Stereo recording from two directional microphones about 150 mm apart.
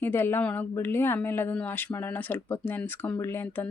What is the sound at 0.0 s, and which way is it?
Speech, 15° left (ahead or behind).